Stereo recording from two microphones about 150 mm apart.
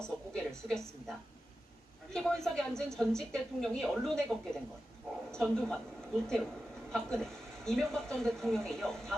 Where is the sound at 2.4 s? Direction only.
5° left (ahead or behind).